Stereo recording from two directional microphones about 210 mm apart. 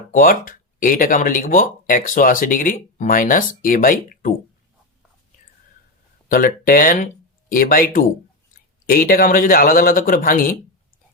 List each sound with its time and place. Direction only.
0.1 s speech: 40° left (ahead or behind)
6.3 s speech: 40° left (ahead or behind)